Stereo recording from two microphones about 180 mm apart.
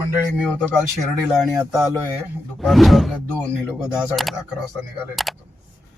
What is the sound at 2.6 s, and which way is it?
Speech, centre (ahead or behind).